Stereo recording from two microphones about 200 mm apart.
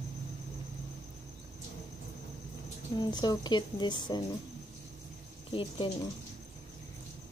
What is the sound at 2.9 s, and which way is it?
Speech, 20° left (ahead or behind).